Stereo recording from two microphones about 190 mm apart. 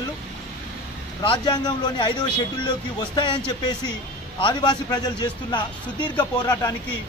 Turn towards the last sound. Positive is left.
turn(degrees=20)  # may be behind; listen again after turning